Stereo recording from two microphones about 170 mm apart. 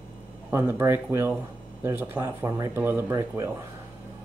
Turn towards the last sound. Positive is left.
turn(degrees=-15)  # may be behind; listen again after turning